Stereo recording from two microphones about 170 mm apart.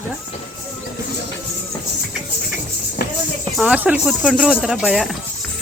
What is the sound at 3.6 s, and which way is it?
Speech, 10° right (ahead or behind).